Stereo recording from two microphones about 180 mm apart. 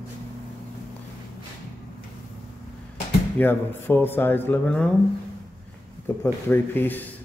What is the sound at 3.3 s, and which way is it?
Speech, 10° left (ahead or behind).